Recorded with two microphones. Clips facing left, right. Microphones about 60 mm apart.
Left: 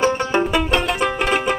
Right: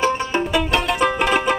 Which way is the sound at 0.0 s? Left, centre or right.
Left.